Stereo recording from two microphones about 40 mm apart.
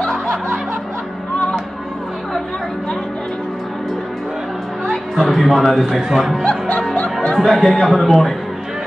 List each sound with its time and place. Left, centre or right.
0.0 s snicker: centre
4.8 s speech: centre
7.3 s speech: centre